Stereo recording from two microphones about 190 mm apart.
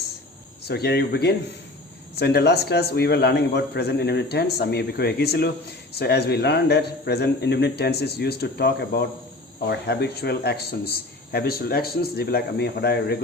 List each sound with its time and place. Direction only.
0.7 s a man's voice: 60° left (ahead or behind)